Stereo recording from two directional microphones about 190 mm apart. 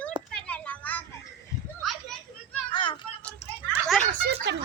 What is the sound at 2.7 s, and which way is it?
Vehicle, 25° left (ahead or behind).